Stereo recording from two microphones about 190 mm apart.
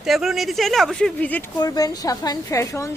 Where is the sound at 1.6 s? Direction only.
20° left (ahead or behind).